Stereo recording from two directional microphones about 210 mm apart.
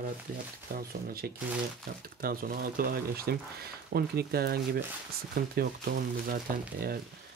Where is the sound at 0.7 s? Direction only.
45° right (ahead or behind).